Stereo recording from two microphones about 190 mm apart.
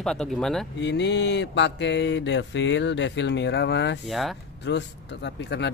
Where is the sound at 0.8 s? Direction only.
70° left (ahead or behind).